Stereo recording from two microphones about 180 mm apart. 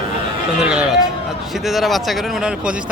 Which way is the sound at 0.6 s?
5° right (ahead or behind).